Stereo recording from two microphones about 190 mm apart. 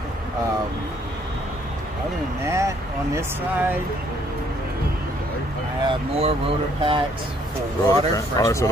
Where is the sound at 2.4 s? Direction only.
15° right (ahead or behind).